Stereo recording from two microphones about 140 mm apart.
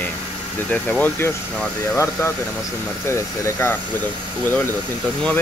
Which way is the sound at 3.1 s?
15° left (ahead or behind).